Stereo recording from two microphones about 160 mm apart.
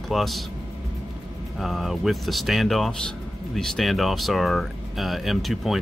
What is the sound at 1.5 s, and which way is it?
Speech, centre (ahead or behind).